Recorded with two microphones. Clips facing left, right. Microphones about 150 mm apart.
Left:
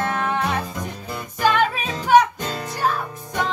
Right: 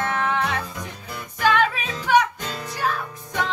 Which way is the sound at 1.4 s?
35° left (ahead or behind).